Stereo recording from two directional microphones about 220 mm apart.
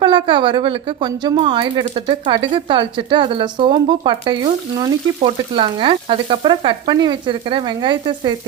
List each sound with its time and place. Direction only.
0.0 s a woman's voice: 20° right (ahead or behind)